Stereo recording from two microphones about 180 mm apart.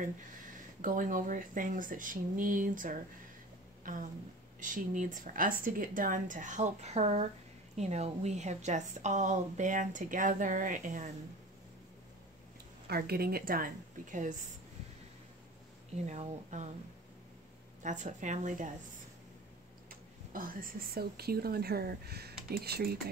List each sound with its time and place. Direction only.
0.0 s a woman's voice: 45° right (ahead or behind)
12.8 s a woman's voice: 60° right (ahead or behind)
16.1 s speech: 40° right (ahead or behind)
17.8 s a woman's voice: 40° right (ahead or behind)
19.9 s speech: 50° right (ahead or behind)